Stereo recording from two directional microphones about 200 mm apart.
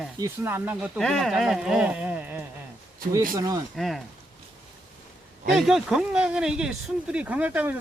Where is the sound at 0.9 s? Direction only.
5° left (ahead or behind); by 3.6 s 20° right (ahead or behind).